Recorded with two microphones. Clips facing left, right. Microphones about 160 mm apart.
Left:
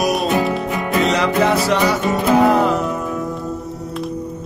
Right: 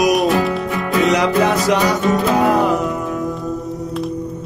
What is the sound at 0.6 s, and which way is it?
Music, 20° left (ahead or behind).